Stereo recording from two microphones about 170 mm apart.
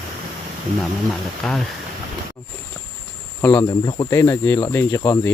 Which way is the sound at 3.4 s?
15° left (ahead or behind).